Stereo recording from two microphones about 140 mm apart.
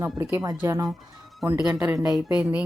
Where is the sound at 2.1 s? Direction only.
5° right (ahead or behind).